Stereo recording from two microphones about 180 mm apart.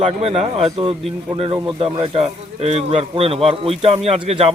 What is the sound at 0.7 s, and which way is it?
A man's voice, 25° right (ahead or behind).